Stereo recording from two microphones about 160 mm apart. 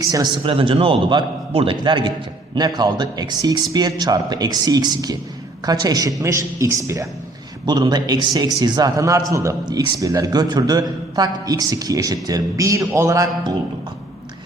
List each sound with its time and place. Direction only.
0.0 s a man's voice: 25° right (ahead or behind)